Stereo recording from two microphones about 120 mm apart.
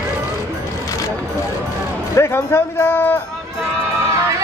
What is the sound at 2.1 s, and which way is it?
A man's voice, 20° left (ahead or behind).